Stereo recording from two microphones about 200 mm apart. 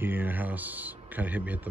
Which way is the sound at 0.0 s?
10° right (ahead or behind).